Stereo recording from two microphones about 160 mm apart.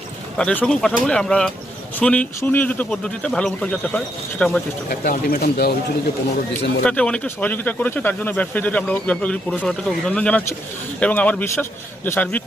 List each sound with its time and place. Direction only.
0.3 s speech: 5° left (ahead or behind)
4.9 s speech: 60° left (ahead or behind)
6.8 s speech: 5° left (ahead or behind)